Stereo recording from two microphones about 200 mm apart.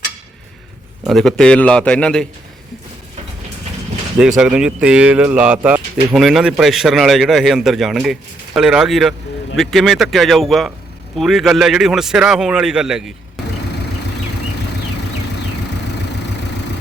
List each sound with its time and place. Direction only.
1.0 s speech: centre (ahead or behind)
4.4 s speech: 5° right (ahead or behind)